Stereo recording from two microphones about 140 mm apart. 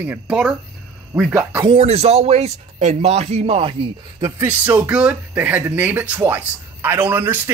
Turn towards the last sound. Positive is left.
turn(degrees=-15)  # may be behind; listen again after turning